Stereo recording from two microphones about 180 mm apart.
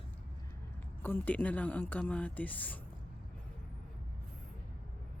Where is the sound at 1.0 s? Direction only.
10° left (ahead or behind).